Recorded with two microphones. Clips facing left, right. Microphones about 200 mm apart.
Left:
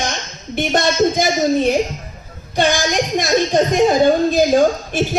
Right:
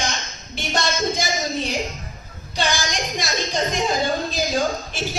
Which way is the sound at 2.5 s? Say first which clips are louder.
Left 8 dB; 55° left (ahead or behind).